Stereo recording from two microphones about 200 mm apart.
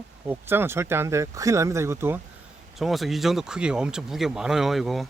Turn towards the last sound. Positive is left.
turn(degrees=0)  # may be behind; listen again after turning